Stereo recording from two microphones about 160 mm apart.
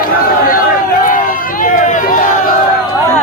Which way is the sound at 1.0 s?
60° left (ahead or behind).